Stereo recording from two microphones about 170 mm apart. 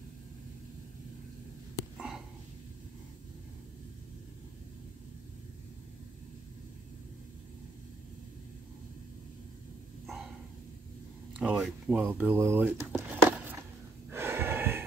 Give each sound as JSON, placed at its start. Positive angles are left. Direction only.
{"t": 2.0, "sound": "a sound", "side_deg": -5}
{"t": 10.0, "sound": "dog", "side_deg": 0}
{"t": 11.3, "sound": "speech", "side_deg": -5}
{"t": 14.1, "sound": "snort", "side_deg": -15}